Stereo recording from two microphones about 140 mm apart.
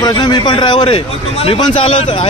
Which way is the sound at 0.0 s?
30° left (ahead or behind).